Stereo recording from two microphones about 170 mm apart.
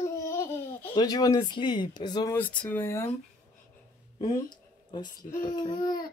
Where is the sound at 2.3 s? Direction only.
10° left (ahead or behind).